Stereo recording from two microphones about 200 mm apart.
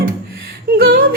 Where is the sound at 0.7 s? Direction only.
45° right (ahead or behind).